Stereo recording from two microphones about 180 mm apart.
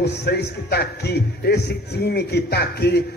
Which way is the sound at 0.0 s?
65° left (ahead or behind).